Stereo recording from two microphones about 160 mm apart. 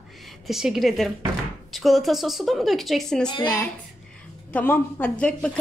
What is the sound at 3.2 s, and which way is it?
Speech, 25° left (ahead or behind).